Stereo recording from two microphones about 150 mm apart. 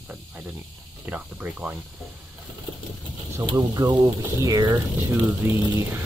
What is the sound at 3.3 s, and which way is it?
Speech, 25° right (ahead or behind).